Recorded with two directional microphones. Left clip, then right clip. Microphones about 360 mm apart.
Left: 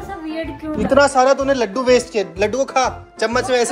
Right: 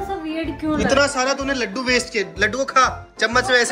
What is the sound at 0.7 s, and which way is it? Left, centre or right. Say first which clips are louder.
A man's voice: left 5 dB; centre.